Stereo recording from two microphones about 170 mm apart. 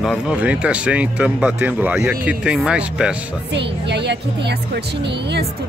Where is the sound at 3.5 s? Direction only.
90° right.